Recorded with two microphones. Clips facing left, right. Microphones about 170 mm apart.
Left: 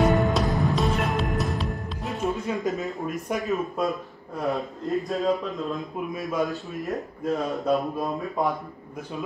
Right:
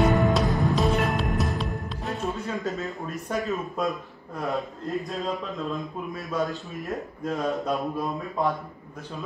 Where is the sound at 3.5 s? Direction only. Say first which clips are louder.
Left 5 dB; centre (ahead or behind).